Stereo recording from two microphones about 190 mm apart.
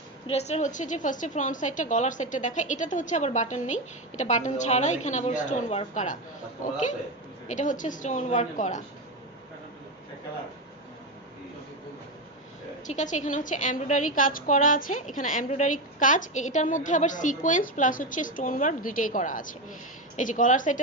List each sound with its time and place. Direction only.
0.3 s a woman's voice: 35° left (ahead or behind)
7.4 s a woman's voice: 40° left (ahead or behind)
12.9 s a woman's voice: 40° left (ahead or behind)